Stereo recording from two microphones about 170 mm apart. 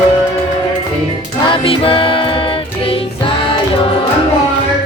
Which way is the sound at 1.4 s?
30° left (ahead or behind).